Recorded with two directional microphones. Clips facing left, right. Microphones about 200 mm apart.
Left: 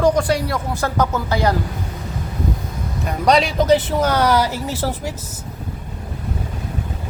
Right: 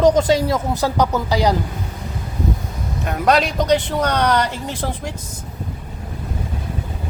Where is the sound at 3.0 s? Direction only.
Centre (ahead or behind).